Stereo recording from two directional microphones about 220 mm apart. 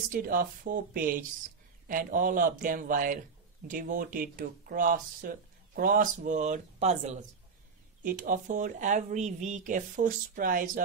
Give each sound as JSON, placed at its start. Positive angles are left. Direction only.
{"t": 0.1, "sound": "speech", "side_deg": -40}